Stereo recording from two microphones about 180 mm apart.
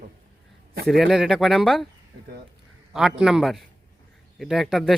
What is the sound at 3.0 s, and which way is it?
Speech, centre (ahead or behind).